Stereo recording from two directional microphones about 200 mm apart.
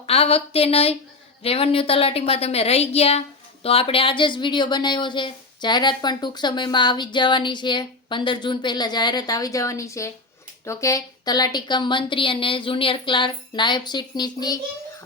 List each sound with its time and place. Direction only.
0.0 s a woman's voice: 30° left (ahead or behind)